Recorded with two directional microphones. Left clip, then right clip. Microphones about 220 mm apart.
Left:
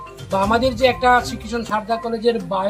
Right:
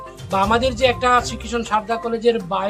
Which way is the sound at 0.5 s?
25° right (ahead or behind).